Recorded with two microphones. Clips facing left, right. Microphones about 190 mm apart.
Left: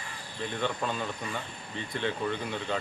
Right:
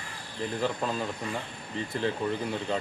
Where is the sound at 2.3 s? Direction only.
5° right (ahead or behind).